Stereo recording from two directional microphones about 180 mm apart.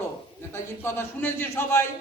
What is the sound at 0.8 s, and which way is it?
A man's voice, 10° left (ahead or behind).